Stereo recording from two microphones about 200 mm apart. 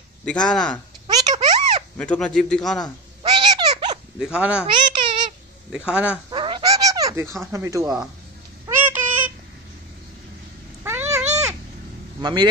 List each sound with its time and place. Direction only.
0.2 s a man's voice: 5° left (ahead or behind)
1.0 s a sound: 20° right (ahead or behind)
2.0 s a man's voice: 5° left (ahead or behind)
3.2 s a sound: 20° right (ahead or behind)
4.2 s a man's voice: 5° right (ahead or behind)
4.6 s a child's voice: 25° right (ahead or behind)
5.7 s a man's voice: 5° right (ahead or behind)
6.3 s a sound: 25° right (ahead or behind)
7.5 s speech: 15° right (ahead or behind)
8.6 s a sound: 10° right (ahead or behind)
10.8 s cat: 10° right (ahead or behind)
12.2 s speech: 20° right (ahead or behind)